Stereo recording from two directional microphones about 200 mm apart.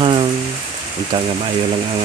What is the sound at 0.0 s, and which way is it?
Rain, 25° right (ahead or behind).